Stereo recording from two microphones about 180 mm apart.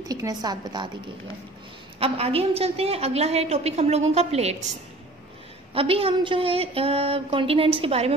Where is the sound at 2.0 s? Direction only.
35° right (ahead or behind).